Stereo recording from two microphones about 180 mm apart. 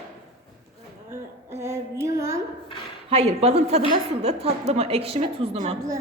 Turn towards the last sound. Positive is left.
turn(degrees=-35)  # may be behind; listen again after turning